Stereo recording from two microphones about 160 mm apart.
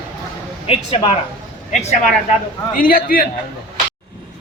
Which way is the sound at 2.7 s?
60° left (ahead or behind).